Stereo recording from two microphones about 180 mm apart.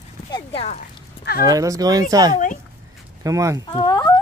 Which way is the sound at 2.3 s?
45° left (ahead or behind).